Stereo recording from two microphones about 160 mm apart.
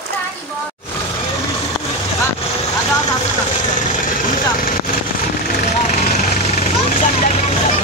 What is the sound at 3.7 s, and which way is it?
Vehicle, 55° left (ahead or behind).